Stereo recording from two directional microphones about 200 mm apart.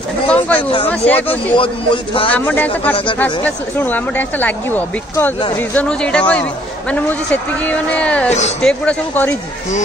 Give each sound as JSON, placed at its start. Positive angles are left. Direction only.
{"t": 0.3, "sound": "speech", "side_deg": 5}
{"t": 1.3, "sound": "a man's voice", "side_deg": 25}
{"t": 2.3, "sound": "speech", "side_deg": 10}
{"t": 8.3, "sound": "speech", "side_deg": 35}
{"t": 8.5, "sound": "speech", "side_deg": 5}